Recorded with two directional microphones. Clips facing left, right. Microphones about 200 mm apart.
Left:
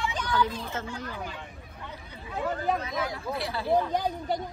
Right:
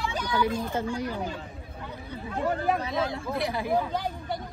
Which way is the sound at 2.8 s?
30° right (ahead or behind).